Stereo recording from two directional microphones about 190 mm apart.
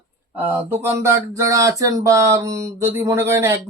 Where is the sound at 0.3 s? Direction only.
10° right (ahead or behind).